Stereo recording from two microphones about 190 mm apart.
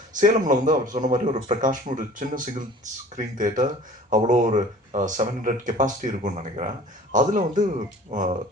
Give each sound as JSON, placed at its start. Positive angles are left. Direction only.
{"t": 0.2, "sound": "speech", "side_deg": -40}